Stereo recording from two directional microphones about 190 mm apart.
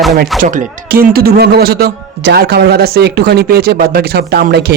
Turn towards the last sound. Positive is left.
turn(degrees=-55)  # may be behind; listen again after turning